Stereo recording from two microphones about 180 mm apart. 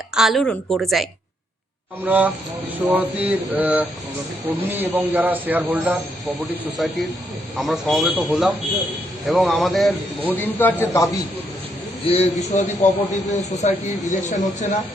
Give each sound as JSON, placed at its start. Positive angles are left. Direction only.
{"t": 0.1, "sound": "a man's voice", "side_deg": 0}
{"t": 2.0, "sound": "a man's voice", "side_deg": -10}
{"t": 7.5, "sound": "a man's voice", "side_deg": 0}
{"t": 12.0, "sound": "speech", "side_deg": 35}